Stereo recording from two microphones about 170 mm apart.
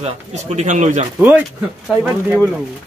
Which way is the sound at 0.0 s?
45° right (ahead or behind).